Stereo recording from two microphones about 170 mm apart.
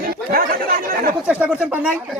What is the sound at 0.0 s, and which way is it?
Speech, 60° right (ahead or behind).